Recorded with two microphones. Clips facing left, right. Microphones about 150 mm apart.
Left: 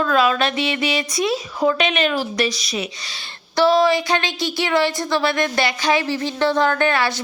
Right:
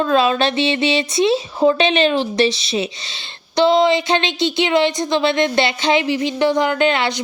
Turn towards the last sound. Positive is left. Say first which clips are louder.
# right 2 dB
turn(degrees=-20)  # may be behind; listen again after turning